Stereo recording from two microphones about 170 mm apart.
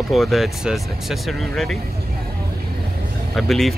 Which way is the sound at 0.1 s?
Centre (ahead or behind).